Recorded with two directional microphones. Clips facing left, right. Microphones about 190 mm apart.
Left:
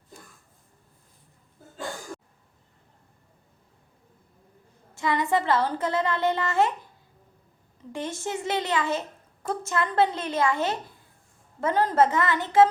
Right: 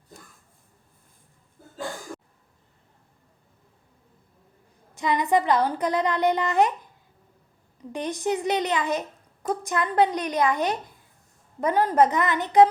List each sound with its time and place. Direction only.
4.9 s a child's voice: 20° right (ahead or behind)
7.9 s a child's voice: 15° right (ahead or behind)